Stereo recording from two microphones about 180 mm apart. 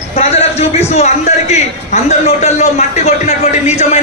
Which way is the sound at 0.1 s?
35° left (ahead or behind).